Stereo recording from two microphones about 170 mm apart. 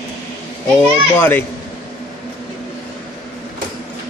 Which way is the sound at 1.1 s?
10° left (ahead or behind).